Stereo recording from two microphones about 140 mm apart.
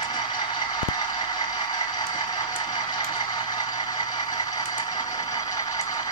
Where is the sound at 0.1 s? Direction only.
35° left (ahead or behind).